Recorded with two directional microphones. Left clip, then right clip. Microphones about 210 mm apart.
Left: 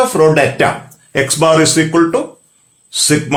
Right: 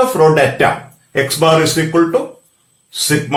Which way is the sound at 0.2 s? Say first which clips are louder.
Even; 45° left (ahead or behind).